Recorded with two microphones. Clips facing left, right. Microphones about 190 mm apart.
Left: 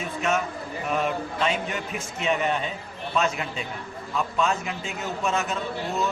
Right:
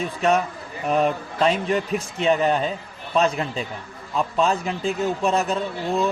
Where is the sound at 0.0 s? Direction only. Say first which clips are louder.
Right 5 dB; 35° right (ahead or behind).